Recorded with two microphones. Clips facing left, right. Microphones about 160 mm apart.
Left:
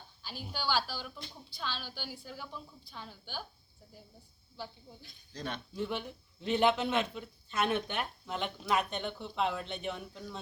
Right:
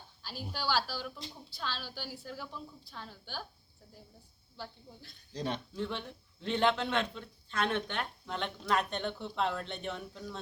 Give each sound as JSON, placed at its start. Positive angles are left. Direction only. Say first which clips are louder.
{"t": 0.2, "sound": "speech", "louder": "right 1 dB", "side_deg": 0}
{"t": 4.5, "sound": "speech", "louder": "left 1 dB", "side_deg": 5}
{"t": 5.3, "sound": "speech", "louder": "right 4 dB", "side_deg": -35}
{"t": 5.7, "sound": "a man's voice", "louder": "left 1 dB", "side_deg": 10}